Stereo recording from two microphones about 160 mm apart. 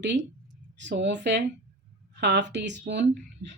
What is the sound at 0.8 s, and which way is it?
Speech, 90° right.